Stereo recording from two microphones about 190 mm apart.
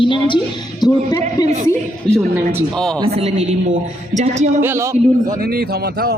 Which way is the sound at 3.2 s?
35° right (ahead or behind).